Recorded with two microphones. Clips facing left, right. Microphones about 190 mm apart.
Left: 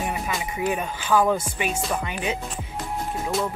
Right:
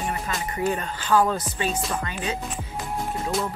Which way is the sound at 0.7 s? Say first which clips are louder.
Even; 10° left (ahead or behind).